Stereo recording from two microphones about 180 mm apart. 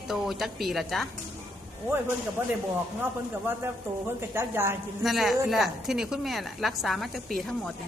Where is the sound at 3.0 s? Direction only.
10° right (ahead or behind).